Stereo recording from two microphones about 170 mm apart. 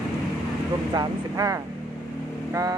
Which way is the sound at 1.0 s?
20° right (ahead or behind).